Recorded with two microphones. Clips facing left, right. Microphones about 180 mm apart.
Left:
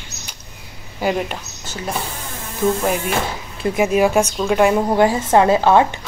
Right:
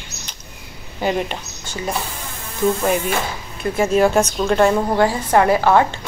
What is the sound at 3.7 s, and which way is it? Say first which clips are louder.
Speech: even; 10° left (ahead or behind).